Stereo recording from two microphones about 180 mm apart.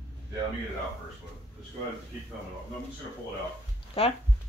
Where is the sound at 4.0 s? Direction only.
30° left (ahead or behind).